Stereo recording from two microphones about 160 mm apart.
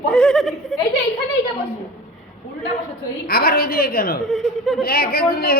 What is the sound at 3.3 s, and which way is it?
Speech, 70° left (ahead or behind).